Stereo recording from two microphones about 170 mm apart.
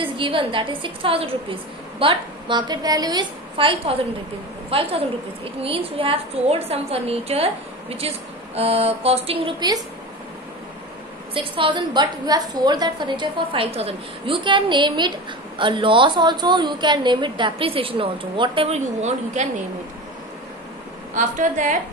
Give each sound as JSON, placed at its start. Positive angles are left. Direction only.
{"t": 0.0, "sound": "a woman's voice", "side_deg": -30}
{"t": 11.3, "sound": "a woman's voice", "side_deg": -30}
{"t": 21.1, "sound": "a woman's voice", "side_deg": -45}